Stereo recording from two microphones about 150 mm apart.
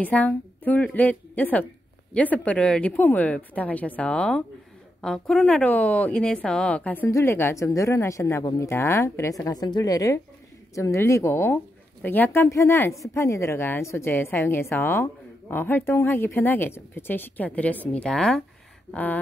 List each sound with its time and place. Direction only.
0.0 s a woman's voice: 10° left (ahead or behind)